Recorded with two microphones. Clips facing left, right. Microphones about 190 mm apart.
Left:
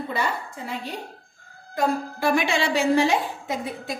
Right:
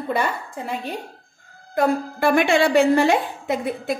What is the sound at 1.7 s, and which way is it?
A woman's voice, 55° right (ahead or behind).